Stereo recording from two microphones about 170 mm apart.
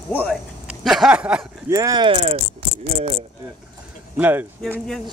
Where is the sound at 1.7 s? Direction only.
25° right (ahead or behind).